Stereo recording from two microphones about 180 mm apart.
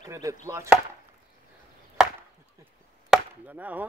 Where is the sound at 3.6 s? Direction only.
10° right (ahead or behind).